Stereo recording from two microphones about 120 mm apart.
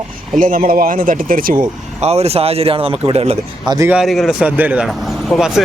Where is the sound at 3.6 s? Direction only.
30° right (ahead or behind).